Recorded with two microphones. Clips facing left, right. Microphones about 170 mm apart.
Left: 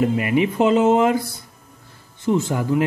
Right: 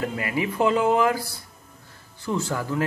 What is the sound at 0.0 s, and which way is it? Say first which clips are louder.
A man's voice: left 8 dB; 20° left (ahead or behind).